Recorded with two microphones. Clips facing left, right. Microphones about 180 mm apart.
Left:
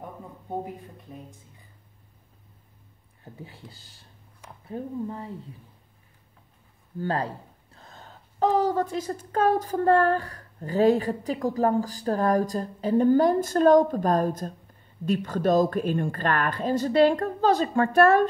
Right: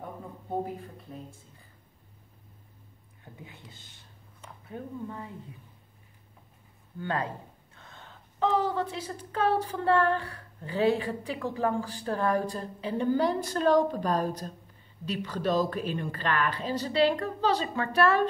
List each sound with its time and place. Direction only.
3.4 s speech: 35° left (ahead or behind)
7.0 s speech: 35° left (ahead or behind)